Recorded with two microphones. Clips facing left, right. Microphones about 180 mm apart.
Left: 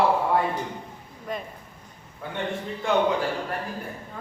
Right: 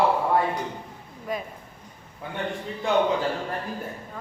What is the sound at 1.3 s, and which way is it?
Speech, 5° right (ahead or behind).